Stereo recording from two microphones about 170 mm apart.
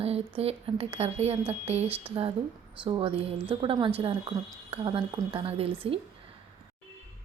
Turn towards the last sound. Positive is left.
turn(degrees=-35)  # may be behind; listen again after turning